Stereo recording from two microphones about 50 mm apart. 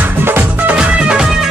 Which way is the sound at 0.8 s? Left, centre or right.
Centre.